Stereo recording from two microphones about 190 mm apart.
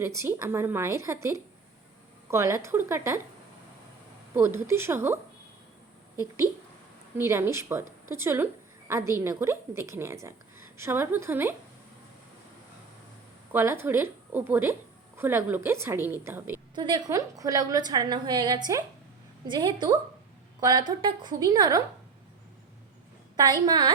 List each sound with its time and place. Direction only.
0.0 s a woman's voice: 15° right (ahead or behind)
4.4 s a woman's voice: 15° right (ahead or behind)
7.2 s a woman's voice: 10° right (ahead or behind)
13.5 s a woman's voice: 10° right (ahead or behind)
16.7 s a woman's voice: 25° right (ahead or behind)
23.4 s a woman's voice: 20° right (ahead or behind)